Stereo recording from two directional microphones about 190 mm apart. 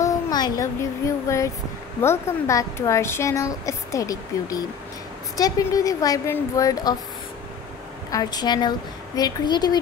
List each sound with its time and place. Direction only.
0.0 s a woman's voice: 20° left (ahead or behind)
8.1 s speech: 20° left (ahead or behind)